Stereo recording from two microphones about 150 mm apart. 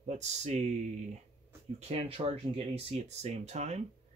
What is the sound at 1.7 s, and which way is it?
Speech, 45° right (ahead or behind).